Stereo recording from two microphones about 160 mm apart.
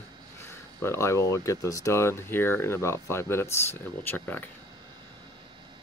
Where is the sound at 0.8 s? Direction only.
15° left (ahead or behind).